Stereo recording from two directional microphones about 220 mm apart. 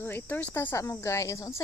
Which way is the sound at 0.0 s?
10° left (ahead or behind).